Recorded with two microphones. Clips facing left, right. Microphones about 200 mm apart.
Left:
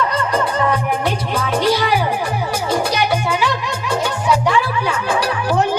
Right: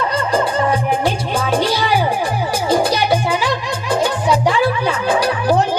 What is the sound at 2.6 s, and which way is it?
Music, 30° right (ahead or behind).